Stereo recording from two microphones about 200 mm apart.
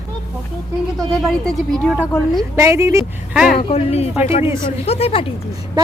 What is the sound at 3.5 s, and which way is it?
A woman's voice, 30° left (ahead or behind).